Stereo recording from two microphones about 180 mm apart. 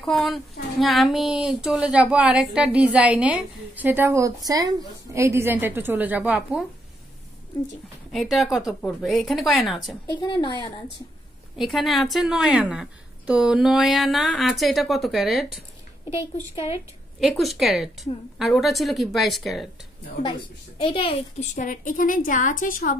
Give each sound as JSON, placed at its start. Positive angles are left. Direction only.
{"t": 0.0, "sound": "speech", "side_deg": 0}
{"t": 8.1, "sound": "speech", "side_deg": 0}
{"t": 10.0, "sound": "speech", "side_deg": 25}
{"t": 11.5, "sound": "speech", "side_deg": 0}
{"t": 16.5, "sound": "speech", "side_deg": 30}
{"t": 17.3, "sound": "speech", "side_deg": 0}
{"t": 20.2, "sound": "a woman's voice", "side_deg": 30}